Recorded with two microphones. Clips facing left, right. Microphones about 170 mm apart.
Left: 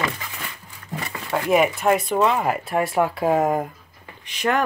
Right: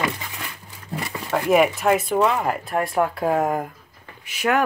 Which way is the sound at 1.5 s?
Centre (ahead or behind).